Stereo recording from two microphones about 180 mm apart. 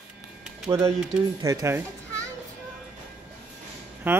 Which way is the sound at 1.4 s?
20° right (ahead or behind).